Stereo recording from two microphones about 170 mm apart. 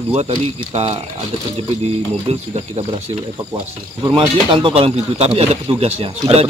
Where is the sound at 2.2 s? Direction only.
35° right (ahead or behind).